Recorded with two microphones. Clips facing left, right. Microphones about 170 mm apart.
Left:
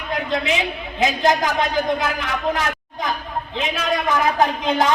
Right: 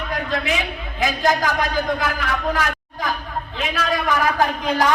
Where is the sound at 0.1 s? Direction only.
20° left (ahead or behind).